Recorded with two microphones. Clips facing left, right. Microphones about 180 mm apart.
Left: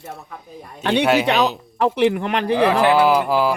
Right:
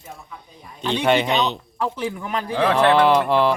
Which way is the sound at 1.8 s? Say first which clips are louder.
Left 9 dB; 75° left (ahead or behind).